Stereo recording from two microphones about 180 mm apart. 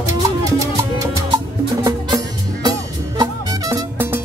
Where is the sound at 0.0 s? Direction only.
20° right (ahead or behind).